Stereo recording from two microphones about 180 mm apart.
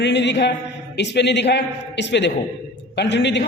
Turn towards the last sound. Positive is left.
turn(degrees=75)  # may be behind; listen again after turning